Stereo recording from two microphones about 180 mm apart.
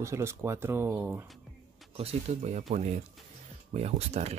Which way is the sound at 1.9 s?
35° right (ahead or behind).